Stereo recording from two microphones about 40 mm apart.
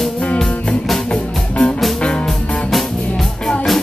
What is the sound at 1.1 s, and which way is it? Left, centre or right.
Music, left.